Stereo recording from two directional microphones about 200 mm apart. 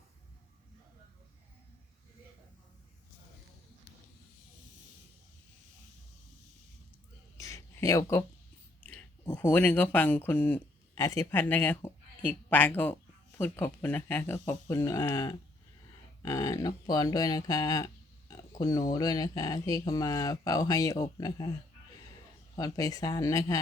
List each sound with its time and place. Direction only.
7.3 s a sound: 15° left (ahead or behind)
9.3 s speech: 5° left (ahead or behind)
22.5 s speech: 20° left (ahead or behind)